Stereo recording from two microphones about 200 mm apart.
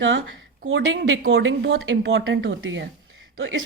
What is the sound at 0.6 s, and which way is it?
Speech, 65° right (ahead or behind).